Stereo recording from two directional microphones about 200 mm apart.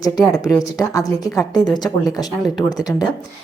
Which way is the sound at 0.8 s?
15° left (ahead or behind).